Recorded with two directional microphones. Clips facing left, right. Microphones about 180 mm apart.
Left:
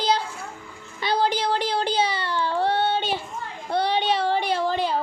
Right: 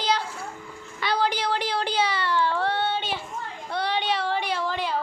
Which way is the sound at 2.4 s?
35° left (ahead or behind).